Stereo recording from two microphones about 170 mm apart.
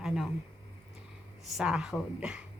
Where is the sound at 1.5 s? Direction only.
5° right (ahead or behind).